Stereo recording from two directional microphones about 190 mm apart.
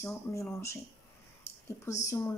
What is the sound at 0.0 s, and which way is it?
Speech, 15° left (ahead or behind).